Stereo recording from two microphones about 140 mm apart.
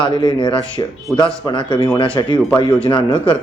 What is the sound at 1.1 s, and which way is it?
Speech, centre (ahead or behind).